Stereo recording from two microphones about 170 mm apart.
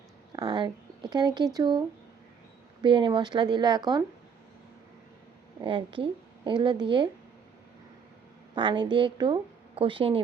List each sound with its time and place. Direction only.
0.3 s a sound: 25° right (ahead or behind)
1.1 s a woman's voice: 25° right (ahead or behind)
2.8 s a woman's voice: 30° right (ahead or behind)
5.6 s a woman's voice: 30° right (ahead or behind)
8.5 s a woman's voice: 25° right (ahead or behind)